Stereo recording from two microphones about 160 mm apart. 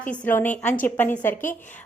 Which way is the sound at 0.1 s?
10° left (ahead or behind).